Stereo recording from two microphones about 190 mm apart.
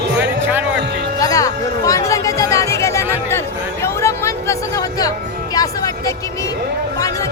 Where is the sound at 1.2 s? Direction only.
15° left (ahead or behind).